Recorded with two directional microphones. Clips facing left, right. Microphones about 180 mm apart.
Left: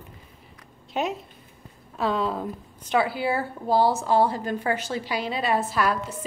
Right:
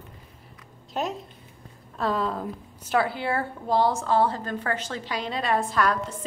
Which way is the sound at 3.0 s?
5° left (ahead or behind).